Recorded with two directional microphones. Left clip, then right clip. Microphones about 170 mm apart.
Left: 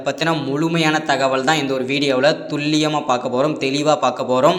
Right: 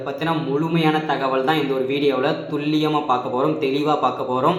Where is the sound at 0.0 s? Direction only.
45° left (ahead or behind).